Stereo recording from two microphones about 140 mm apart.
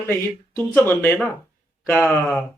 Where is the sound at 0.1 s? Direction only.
15° left (ahead or behind).